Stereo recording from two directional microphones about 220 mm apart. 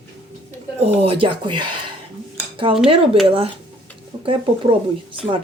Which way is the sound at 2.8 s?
25° right (ahead or behind).